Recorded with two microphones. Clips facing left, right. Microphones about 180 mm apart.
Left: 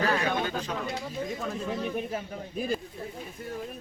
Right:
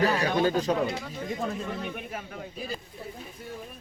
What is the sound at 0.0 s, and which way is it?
Chatter, 35° right (ahead or behind).